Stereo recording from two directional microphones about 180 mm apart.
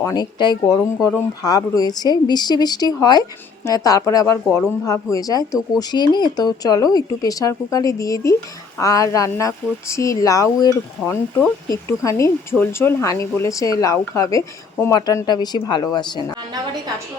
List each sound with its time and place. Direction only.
0.0 s speech: 20° left (ahead or behind)